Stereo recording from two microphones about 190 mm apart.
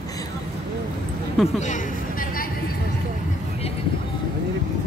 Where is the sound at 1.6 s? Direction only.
45° left (ahead or behind).